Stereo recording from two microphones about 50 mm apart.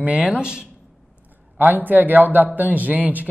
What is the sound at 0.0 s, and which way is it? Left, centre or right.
Speech, right.